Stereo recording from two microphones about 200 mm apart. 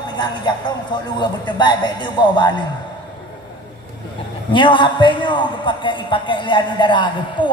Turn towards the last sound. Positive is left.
turn(degrees=25)  # may be behind; listen again after turning